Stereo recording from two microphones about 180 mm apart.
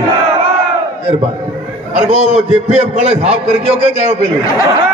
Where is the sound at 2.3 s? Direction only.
35° right (ahead or behind).